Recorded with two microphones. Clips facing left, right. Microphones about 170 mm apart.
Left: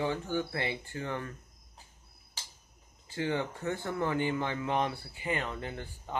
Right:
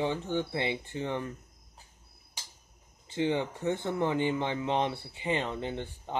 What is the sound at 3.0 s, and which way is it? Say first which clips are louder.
Speech: right 3 dB; 20° right (ahead or behind).